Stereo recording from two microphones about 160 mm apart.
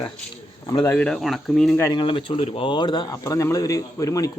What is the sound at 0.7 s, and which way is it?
Speech, 20° left (ahead or behind).